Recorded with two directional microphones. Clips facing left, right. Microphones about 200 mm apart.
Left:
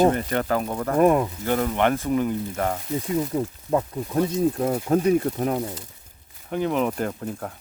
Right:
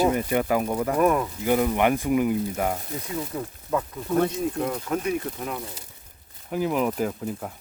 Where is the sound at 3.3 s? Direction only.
30° left (ahead or behind).